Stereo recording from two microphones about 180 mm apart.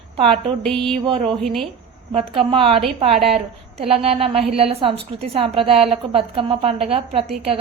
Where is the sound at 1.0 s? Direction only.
30° right (ahead or behind).